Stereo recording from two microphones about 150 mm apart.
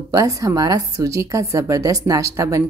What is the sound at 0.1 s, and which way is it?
A woman's voice, 25° right (ahead or behind).